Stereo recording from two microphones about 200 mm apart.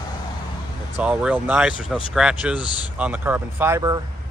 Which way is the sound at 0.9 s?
5° right (ahead or behind).